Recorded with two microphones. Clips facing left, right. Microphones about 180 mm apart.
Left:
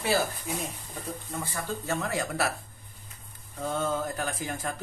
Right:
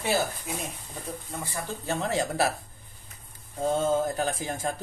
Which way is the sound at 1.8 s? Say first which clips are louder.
Right 4 dB; 25° right (ahead or behind).